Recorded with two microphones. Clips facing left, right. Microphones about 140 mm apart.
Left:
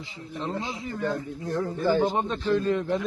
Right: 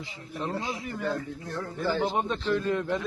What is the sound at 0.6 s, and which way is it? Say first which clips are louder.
Speech: left 2 dB; 25° left (ahead or behind).